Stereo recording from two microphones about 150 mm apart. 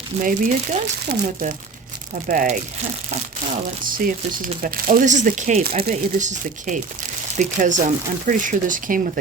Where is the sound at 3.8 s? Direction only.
65° right (ahead or behind).